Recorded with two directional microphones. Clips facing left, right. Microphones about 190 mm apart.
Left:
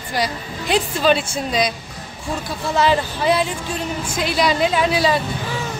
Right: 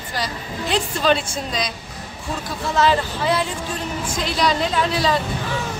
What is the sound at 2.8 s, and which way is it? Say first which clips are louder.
A woman's voice: left 1 dB; 15° left (ahead or behind).